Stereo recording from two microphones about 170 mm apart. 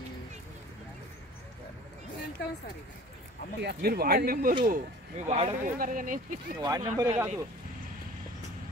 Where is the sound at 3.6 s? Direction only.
65° right (ahead or behind).